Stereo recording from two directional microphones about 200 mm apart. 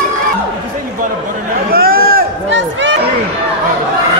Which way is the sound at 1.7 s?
50° right (ahead or behind).